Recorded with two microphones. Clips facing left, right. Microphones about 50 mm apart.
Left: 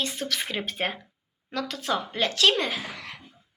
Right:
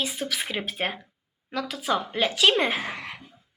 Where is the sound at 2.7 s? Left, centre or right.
Right.